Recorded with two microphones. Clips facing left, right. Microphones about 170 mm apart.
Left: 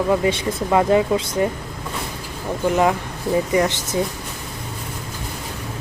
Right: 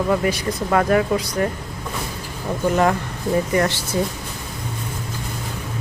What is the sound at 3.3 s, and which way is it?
Speech, 15° left (ahead or behind).